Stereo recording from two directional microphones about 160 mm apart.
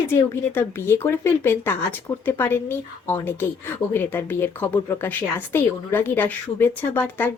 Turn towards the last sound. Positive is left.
turn(degrees=10)  # may be behind; listen again after turning